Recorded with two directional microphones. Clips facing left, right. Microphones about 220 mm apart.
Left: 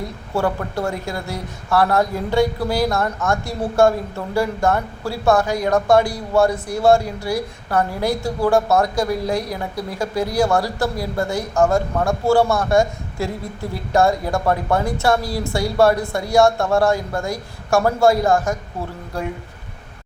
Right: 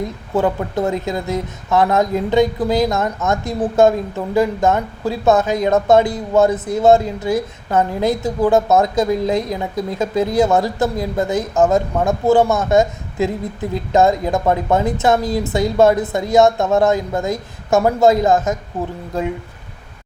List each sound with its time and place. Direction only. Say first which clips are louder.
0.3 s speech: right 4 dB; 20° right (ahead or behind)